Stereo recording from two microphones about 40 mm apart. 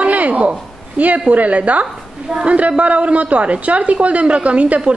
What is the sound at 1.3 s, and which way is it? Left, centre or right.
A woman's voice, right.